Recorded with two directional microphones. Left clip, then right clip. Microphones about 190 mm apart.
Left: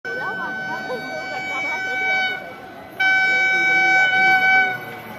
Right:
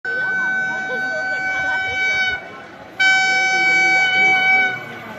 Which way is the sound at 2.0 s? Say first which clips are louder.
Right 1 dB; 60° right (ahead or behind).